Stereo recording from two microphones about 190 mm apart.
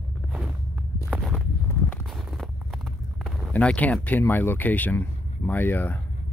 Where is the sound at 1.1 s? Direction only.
Centre (ahead or behind).